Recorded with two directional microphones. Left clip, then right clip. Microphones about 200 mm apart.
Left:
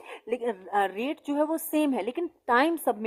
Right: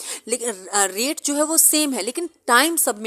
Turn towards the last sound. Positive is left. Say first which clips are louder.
# right 6 dB
turn(degrees=-20)  # may be behind; listen again after turning